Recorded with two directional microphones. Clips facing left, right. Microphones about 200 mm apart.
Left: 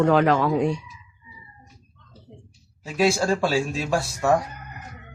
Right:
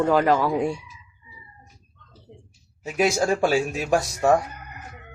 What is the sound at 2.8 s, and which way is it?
Speech, 15° right (ahead or behind).